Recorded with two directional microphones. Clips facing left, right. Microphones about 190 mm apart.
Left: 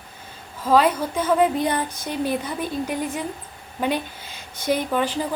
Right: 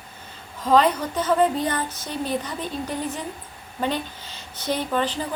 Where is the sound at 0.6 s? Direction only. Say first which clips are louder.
Left 1 dB; 10° left (ahead or behind).